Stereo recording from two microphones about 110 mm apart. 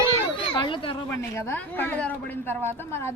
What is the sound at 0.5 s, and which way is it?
Speech, 50° left (ahead or behind).